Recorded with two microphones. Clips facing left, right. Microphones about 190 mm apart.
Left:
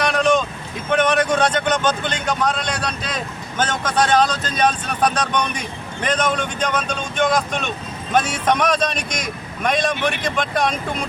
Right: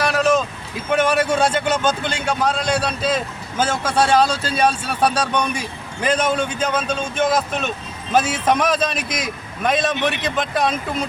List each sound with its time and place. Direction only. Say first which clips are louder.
0.0 s vehicle: even; 5° right (ahead or behind)
0.9 s a man's voice: even; 5° right (ahead or behind)